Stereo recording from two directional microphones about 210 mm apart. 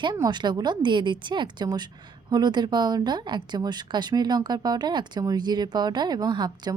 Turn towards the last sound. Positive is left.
turn(degrees=-20)  # may be behind; listen again after turning